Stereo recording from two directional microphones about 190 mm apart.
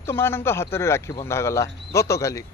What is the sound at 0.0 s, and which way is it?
Speech, 10° left (ahead or behind).